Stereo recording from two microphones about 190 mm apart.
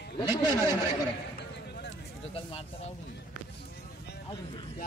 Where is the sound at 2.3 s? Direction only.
30° left (ahead or behind).